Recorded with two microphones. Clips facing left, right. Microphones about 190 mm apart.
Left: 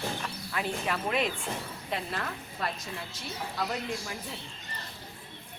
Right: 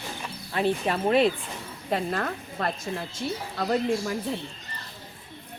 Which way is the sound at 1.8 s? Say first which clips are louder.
Right 8 dB; 45° right (ahead or behind).